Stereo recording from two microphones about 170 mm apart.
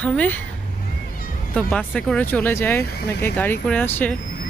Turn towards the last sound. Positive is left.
turn(degrees=10)  # may be behind; listen again after turning